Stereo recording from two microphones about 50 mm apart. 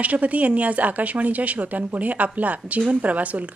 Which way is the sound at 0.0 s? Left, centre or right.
Right.